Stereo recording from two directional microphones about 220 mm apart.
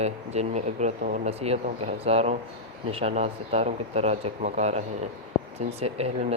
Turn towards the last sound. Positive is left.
turn(degrees=-30)  # may be behind; listen again after turning